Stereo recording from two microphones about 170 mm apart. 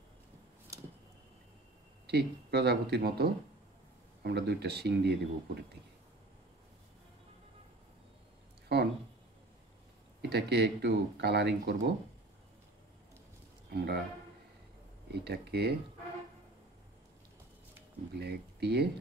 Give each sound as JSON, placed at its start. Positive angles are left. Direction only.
{"t": 2.0, "sound": "speech", "side_deg": -75}
{"t": 8.7, "sound": "speech", "side_deg": -70}
{"t": 10.3, "sound": "speech", "side_deg": -75}
{"t": 13.7, "sound": "speech", "side_deg": -70}
{"t": 15.2, "sound": "speech", "side_deg": -70}
{"t": 18.2, "sound": "speech", "side_deg": -75}